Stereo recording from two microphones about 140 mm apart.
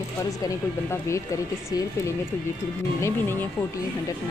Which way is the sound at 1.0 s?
20° left (ahead or behind).